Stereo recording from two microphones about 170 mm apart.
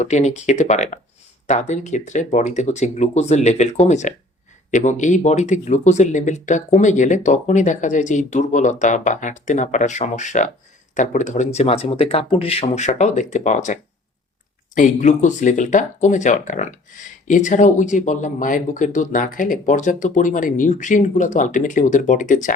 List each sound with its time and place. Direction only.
0.0 s speech: 40° left (ahead or behind)
14.8 s speech: 45° left (ahead or behind)